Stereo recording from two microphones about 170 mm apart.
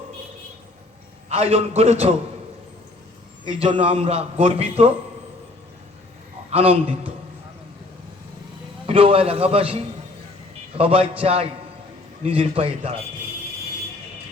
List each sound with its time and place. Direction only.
1.3 s a man's voice: 35° right (ahead or behind)
3.4 s a man's voice: 30° right (ahead or behind)
6.5 s a man's voice: 35° right (ahead or behind)
8.9 s a man's voice: 35° right (ahead or behind)